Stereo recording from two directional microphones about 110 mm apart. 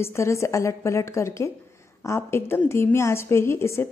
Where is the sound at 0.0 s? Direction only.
25° left (ahead or behind).